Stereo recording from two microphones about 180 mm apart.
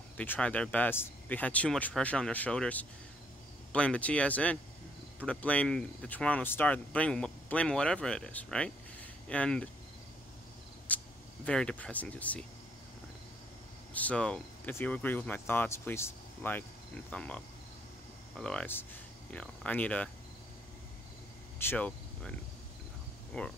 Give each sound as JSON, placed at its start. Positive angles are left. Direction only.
{"t": 0.2, "sound": "speech", "side_deg": 10}
{"t": 10.9, "sound": "cricket", "side_deg": 10}
{"t": 11.4, "sound": "speech", "side_deg": 5}
{"t": 13.9, "sound": "speech", "side_deg": 5}
{"t": 21.5, "sound": "cricket", "side_deg": 10}
{"t": 23.3, "sound": "speech", "side_deg": 5}